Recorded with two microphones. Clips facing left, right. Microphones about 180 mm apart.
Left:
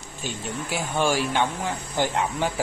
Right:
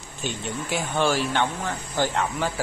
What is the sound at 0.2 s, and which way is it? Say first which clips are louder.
Speech: right 1 dB; 5° left (ahead or behind).